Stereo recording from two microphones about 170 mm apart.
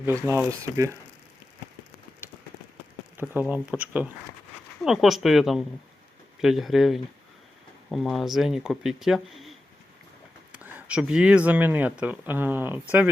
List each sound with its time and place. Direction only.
0.3 s speech: 15° right (ahead or behind)
2.2 s a sound: 10° right (ahead or behind)
3.5 s speech: 10° right (ahead or behind)
10.5 s speech: 10° right (ahead or behind)